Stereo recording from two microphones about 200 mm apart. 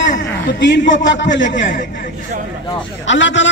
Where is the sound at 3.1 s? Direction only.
65° left (ahead or behind).